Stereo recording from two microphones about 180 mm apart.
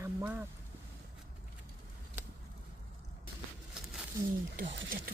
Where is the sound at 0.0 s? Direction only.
10° right (ahead or behind).